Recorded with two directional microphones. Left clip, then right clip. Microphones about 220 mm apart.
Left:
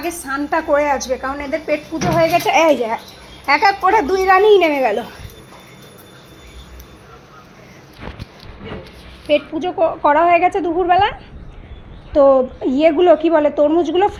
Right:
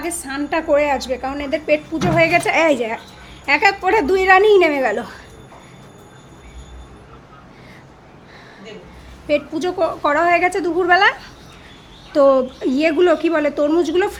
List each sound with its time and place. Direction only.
0.0 s a child's voice: centre (ahead or behind)
0.8 s a woman's voice: 20° right (ahead or behind)
2.1 s a child's voice: 10° right (ahead or behind)
3.5 s a woman's voice: 15° right (ahead or behind)
4.0 s a woman's voice: 30° right (ahead or behind)
4.4 s a child's voice: 10° right (ahead or behind)
9.2 s a woman's voice: 10° right (ahead or behind)
12.2 s a woman's voice: 15° right (ahead or behind)